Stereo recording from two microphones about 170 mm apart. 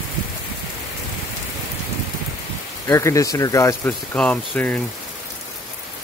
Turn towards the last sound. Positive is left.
turn(degrees=10)  # may be behind; listen again after turning